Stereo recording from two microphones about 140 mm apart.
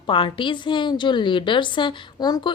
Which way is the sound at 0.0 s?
35° left (ahead or behind).